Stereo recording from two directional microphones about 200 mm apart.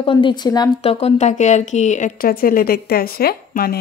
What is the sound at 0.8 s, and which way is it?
Speech, 30° left (ahead or behind).